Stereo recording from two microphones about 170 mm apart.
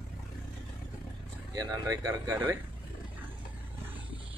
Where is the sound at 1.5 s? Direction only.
20° right (ahead or behind).